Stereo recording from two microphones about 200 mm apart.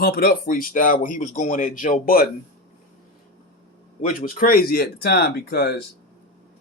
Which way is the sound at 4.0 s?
40° left (ahead or behind).